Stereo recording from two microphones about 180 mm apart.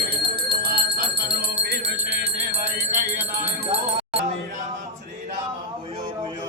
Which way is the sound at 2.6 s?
50° right (ahead or behind).